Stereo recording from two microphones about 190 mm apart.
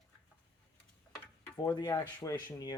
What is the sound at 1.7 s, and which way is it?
Speech, 20° left (ahead or behind).